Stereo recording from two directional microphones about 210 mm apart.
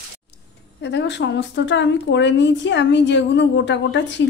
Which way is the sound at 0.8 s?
55° left (ahead or behind).